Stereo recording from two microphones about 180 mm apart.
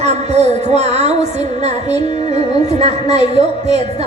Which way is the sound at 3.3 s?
35° right (ahead or behind).